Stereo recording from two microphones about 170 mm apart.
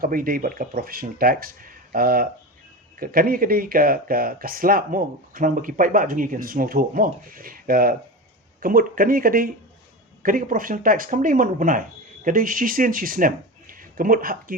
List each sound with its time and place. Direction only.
0.0 s speech: 55° right (ahead or behind)